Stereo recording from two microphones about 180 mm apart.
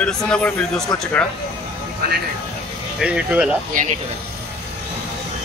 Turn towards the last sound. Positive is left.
turn(degrees=-45)  # may be behind; listen again after turning